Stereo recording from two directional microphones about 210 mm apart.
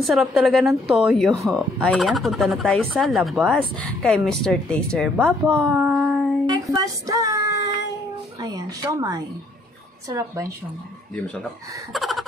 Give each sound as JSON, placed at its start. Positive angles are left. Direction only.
{"t": 0.0, "sound": "speech", "side_deg": 0}
{"t": 5.6, "sound": "a sound", "side_deg": -5}
{"t": 6.4, "sound": "child singing", "side_deg": -15}
{"t": 8.4, "sound": "speech", "side_deg": -20}
{"t": 11.9, "sound": "gasp", "side_deg": 0}